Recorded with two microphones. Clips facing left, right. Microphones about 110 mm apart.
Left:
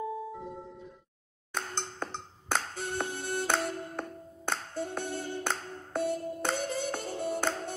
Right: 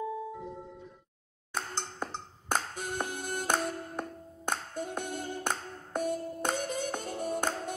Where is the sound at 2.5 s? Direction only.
10° right (ahead or behind).